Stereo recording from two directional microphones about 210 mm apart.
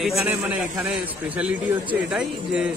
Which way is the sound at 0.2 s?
10° right (ahead or behind).